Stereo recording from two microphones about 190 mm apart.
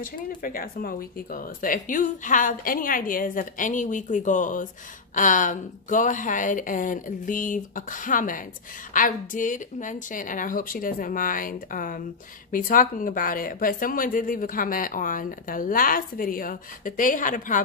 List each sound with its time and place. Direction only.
0.0 s a woman's voice: 45° left (ahead or behind)